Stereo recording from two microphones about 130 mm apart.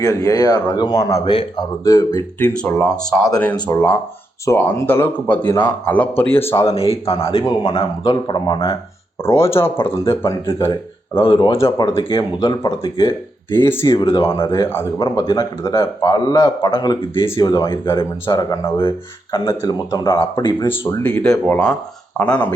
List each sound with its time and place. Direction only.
0.0 s a man's voice: 25° left (ahead or behind)
1.2 s speech: 40° left (ahead or behind)
1.8 s a man's voice: 25° left (ahead or behind)
2.4 s speech: 5° left (ahead or behind)
4.4 s speech: 20° left (ahead or behind)
6.7 s speech: 50° left (ahead or behind)
9.2 s a man's voice: 20° left (ahead or behind)
11.2 s speech: 40° left (ahead or behind)
13.5 s speech: 15° left (ahead or behind)
13.8 s a man's voice: 30° left (ahead or behind)
20.7 s speech: 15° left (ahead or behind)